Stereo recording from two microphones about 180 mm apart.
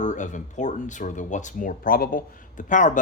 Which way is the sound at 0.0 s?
45° left (ahead or behind).